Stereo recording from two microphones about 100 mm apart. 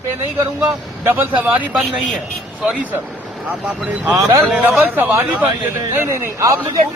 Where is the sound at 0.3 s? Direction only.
25° right (ahead or behind).